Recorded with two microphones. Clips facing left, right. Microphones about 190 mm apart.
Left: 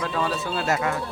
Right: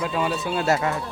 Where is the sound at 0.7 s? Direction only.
30° right (ahead or behind).